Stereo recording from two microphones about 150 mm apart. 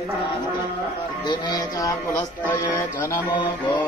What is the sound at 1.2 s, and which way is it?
Speech, 25° left (ahead or behind).